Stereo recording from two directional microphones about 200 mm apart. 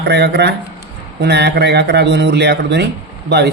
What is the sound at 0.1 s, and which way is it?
Speech, 55° right (ahead or behind).